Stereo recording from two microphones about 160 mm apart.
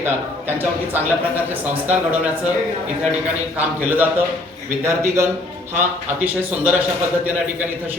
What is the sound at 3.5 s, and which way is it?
A man's voice, 10° right (ahead or behind).